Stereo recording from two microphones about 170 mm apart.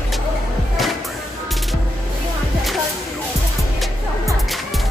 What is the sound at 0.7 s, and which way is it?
Music, centre (ahead or behind).